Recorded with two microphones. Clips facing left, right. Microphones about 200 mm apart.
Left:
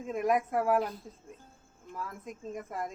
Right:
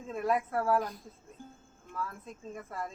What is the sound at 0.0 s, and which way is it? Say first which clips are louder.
A woman's voice: left 2 dB; 15° left (ahead or behind).